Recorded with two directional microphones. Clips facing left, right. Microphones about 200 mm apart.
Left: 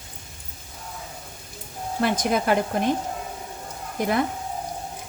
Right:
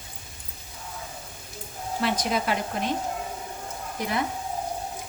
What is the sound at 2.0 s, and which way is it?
Speech, 50° left (ahead or behind).